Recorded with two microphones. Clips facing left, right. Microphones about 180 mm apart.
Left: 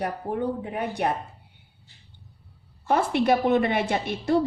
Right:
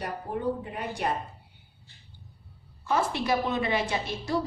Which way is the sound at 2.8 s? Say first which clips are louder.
Left 5 dB; 60° left (ahead or behind).